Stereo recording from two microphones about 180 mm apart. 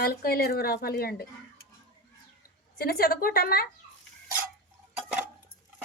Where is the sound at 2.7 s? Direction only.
60° left (ahead or behind).